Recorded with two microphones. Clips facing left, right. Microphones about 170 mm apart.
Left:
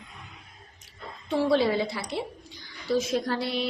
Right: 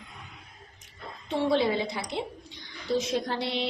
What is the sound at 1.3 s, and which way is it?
A woman's voice, 20° right (ahead or behind).